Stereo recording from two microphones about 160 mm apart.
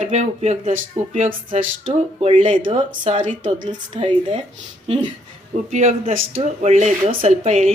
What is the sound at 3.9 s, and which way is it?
Speech, 35° right (ahead or behind).